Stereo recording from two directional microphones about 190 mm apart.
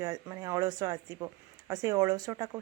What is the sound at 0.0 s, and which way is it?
A woman's voice, 15° right (ahead or behind).